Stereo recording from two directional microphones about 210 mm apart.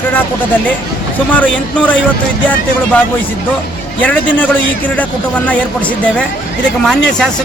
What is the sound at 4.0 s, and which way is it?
A man's voice, 5° left (ahead or behind).